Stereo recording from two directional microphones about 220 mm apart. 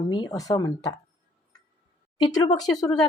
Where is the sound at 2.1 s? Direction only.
20° left (ahead or behind).